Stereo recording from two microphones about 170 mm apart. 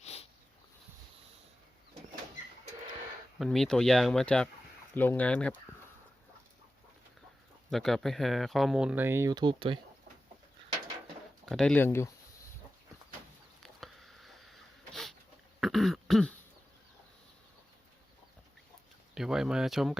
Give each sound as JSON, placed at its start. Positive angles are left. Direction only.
{"t": 0.0, "sound": "a sound", "side_deg": 40}
{"t": 3.3, "sound": "speech", "side_deg": 0}
{"t": 7.7, "sound": "speech", "side_deg": 0}
{"t": 11.4, "sound": "speech", "side_deg": 5}
{"t": 13.6, "sound": "a sound", "side_deg": 0}
{"t": 15.6, "sound": "throat clearing", "side_deg": 0}
{"t": 19.1, "sound": "speech", "side_deg": -5}